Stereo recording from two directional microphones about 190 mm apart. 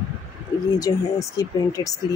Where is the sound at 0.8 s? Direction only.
15° left (ahead or behind).